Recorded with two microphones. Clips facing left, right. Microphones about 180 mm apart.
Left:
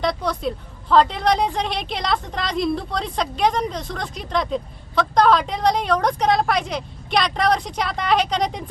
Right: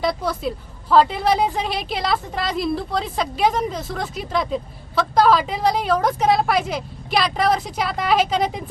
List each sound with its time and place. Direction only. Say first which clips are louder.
0.0 s a woman's voice: even; 5° right (ahead or behind)